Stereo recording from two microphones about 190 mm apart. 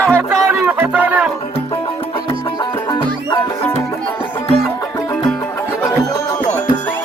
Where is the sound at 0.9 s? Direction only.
10° right (ahead or behind).